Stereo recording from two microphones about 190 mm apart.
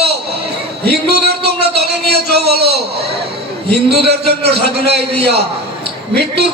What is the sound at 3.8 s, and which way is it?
A man's voice, 60° right (ahead or behind).